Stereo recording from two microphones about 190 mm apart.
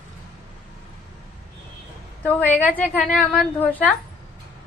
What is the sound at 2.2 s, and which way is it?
A woman's voice, 10° left (ahead or behind).